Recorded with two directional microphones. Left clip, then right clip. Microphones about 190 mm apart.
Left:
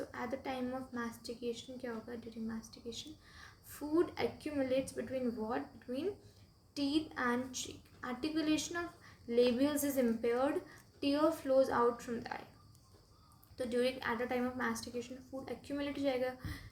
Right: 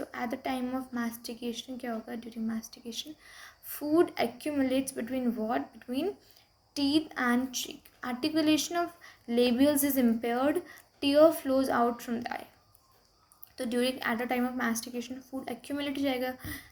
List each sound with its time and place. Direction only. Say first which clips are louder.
0.0 s a woman's voice: right 6 dB; 45° right (ahead or behind)
13.6 s a woman's voice: right 4 dB; 45° right (ahead or behind)